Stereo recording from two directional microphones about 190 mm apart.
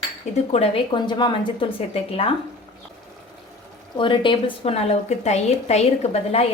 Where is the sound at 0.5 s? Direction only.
30° left (ahead or behind).